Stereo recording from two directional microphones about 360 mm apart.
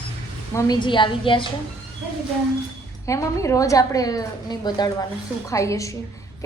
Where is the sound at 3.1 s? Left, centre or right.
Centre.